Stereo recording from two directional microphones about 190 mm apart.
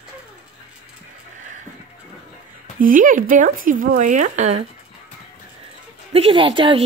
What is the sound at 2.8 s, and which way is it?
Speech, 45° right (ahead or behind).